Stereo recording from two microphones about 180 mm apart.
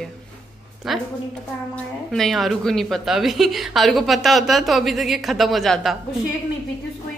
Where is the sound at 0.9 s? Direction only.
Centre (ahead or behind).